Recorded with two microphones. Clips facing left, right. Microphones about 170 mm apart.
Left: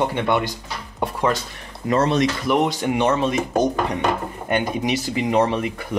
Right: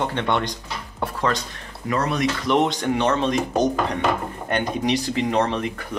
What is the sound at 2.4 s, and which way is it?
Speech, 5° left (ahead or behind).